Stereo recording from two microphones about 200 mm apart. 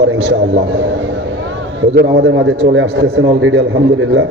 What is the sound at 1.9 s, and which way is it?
A man's voice, 60° right (ahead or behind).